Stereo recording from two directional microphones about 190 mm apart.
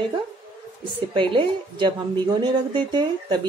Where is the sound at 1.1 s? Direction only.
25° right (ahead or behind).